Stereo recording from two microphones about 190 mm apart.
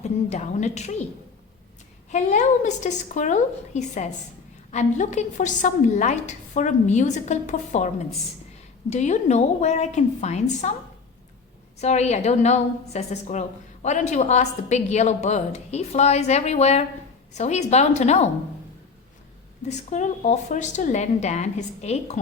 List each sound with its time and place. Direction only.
0.0 s a woman's voice: 35° left (ahead or behind)
2.0 s a woman's voice: 40° left (ahead or behind)
11.8 s a woman's voice: 35° left (ahead or behind)
19.6 s a woman's voice: 40° left (ahead or behind)